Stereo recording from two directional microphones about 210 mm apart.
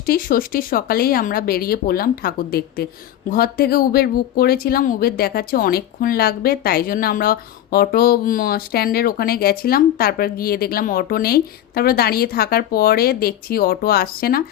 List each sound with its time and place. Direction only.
0.0 s speech: 45° left (ahead or behind)